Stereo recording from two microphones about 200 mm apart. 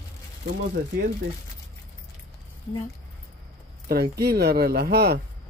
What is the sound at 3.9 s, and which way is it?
Speech, 55° right (ahead or behind).